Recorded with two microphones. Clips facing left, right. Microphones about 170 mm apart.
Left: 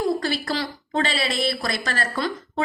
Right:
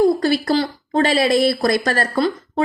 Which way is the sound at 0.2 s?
40° right (ahead or behind).